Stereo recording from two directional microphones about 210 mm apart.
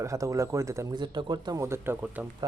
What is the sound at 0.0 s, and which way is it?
Speech, 15° right (ahead or behind).